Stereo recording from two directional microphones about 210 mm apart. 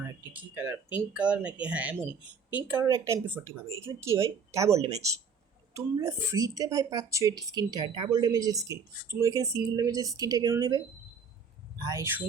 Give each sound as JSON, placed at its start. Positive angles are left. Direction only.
{"t": 0.3, "sound": "speech", "side_deg": -10}